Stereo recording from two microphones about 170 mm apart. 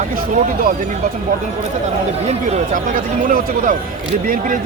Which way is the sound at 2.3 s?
45° right (ahead or behind).